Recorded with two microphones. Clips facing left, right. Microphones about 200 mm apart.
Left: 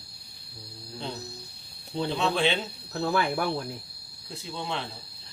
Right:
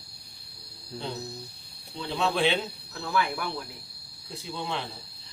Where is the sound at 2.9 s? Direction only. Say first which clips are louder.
Left 3 dB; 40° left (ahead or behind).